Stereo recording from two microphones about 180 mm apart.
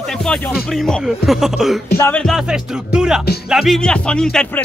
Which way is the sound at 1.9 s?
15° left (ahead or behind).